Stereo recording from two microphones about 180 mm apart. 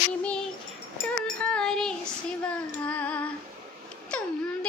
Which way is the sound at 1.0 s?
5° left (ahead or behind).